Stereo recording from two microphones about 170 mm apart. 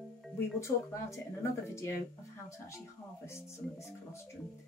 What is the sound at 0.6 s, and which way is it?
Speech, 15° left (ahead or behind).